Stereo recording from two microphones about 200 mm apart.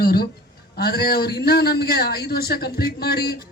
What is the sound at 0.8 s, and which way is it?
A man's voice, 50° left (ahead or behind).